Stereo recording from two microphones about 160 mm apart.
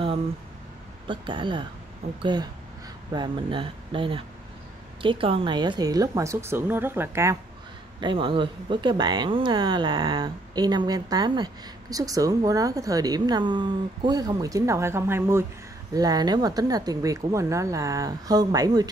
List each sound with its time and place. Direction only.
1.0 s speech: 30° right (ahead or behind)
3.1 s speech: 30° right (ahead or behind)
8.0 s speech: 30° right (ahead or behind)